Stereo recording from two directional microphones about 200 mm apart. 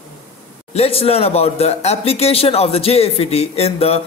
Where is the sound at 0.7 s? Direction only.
30° left (ahead or behind).